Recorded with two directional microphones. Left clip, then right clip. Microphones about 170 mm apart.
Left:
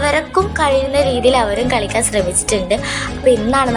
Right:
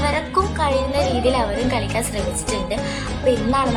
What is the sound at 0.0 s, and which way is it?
A woman's voice, 15° left (ahead or behind).